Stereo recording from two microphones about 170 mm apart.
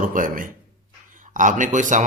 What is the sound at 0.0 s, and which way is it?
A man's voice, 55° right (ahead or behind).